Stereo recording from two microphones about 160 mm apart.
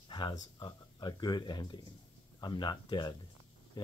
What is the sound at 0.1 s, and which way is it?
Speech, 30° left (ahead or behind).